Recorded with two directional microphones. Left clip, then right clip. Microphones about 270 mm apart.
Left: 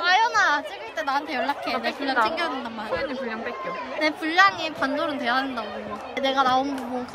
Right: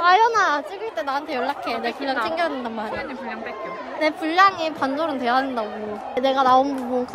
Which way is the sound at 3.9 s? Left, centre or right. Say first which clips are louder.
Right 2 dB; centre.